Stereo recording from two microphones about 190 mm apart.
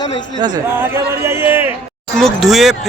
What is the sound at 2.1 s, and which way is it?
Speech, centre (ahead or behind).